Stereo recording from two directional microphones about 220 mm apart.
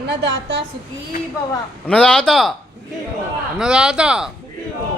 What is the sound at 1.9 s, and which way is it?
Speech, 5° left (ahead or behind).